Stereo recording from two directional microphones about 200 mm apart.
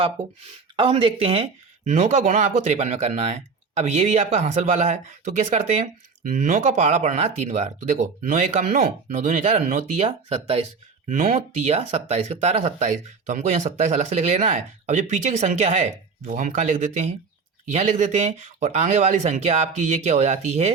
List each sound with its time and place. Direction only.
0.8 s speech: 25° right (ahead or behind)
11.1 s speech: 40° right (ahead or behind)